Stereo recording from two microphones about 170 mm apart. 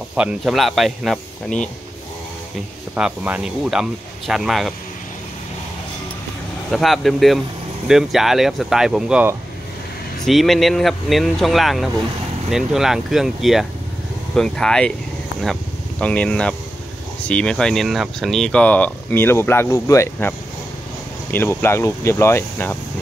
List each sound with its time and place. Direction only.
0.1 s speech: 5° right (ahead or behind)
3.0 s speech: 5° right (ahead or behind)
6.7 s speech: centre (ahead or behind)
16.0 s speech: 5° left (ahead or behind)